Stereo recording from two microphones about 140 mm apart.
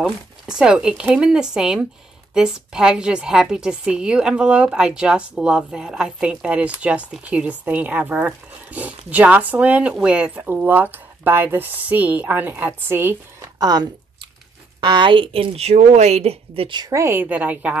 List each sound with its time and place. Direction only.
0.0 s a woman's voice: 5° right (ahead or behind)
13.6 s a woman's voice: 30° right (ahead or behind); by 17.7 s 10° right (ahead or behind)